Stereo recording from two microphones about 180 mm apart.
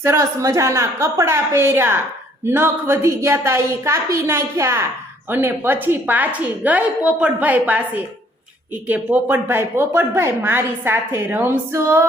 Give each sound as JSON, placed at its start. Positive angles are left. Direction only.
{"t": 0.0, "sound": "speech", "side_deg": -15}